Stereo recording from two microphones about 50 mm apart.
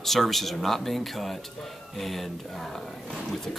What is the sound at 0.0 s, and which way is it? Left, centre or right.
Speech, centre.